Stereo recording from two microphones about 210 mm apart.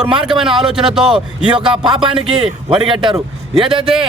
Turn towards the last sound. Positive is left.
turn(degrees=-25)  # may be behind; listen again after turning